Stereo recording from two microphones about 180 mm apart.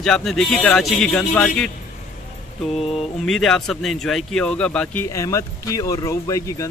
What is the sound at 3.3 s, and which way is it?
Speech, centre (ahead or behind).